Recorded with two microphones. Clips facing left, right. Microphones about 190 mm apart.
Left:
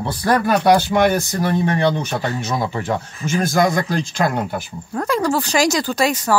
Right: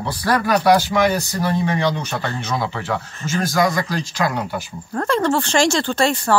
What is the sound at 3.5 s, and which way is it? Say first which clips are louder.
Speech: left 1 dB; 50° left (ahead or behind).